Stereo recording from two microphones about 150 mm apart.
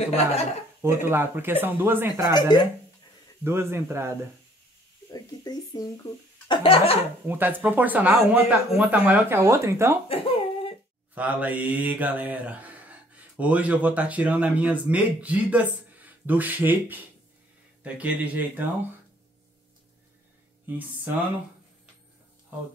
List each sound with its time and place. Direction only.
0.8 s speech: 15° right (ahead or behind)
2.3 s speech: 30° left (ahead or behind)
3.4 s speech: 15° right (ahead or behind)
5.1 s a sound: 25° left (ahead or behind)
7.2 s speech: 15° right (ahead or behind)
10.0 s whimper: 40° left (ahead or behind)
11.1 s mantra: 10° right (ahead or behind)
17.8 s speech: 10° right (ahead or behind)
20.6 s speech: 10° right (ahead or behind)